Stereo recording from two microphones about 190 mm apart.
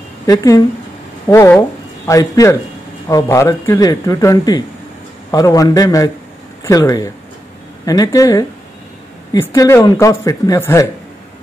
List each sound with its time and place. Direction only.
0.3 s speech: 15° left (ahead or behind)